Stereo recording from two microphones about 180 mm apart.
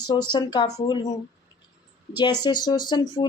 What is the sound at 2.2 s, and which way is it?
Speech, 25° left (ahead or behind).